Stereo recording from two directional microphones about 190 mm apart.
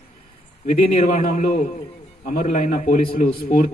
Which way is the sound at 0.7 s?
40° left (ahead or behind).